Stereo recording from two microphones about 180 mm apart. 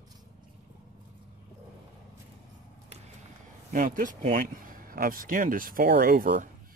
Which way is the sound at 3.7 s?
50° right (ahead or behind).